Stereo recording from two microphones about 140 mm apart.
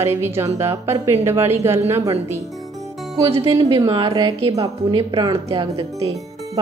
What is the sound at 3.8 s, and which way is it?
A woman's voice, 30° right (ahead or behind).